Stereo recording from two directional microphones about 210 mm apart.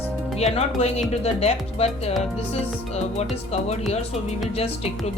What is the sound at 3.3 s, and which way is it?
Speech, 30° left (ahead or behind).